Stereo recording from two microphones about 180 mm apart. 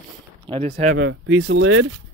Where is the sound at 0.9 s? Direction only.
85° right.